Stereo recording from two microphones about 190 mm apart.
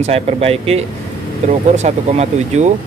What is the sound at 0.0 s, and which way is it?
Speech, 35° right (ahead or behind).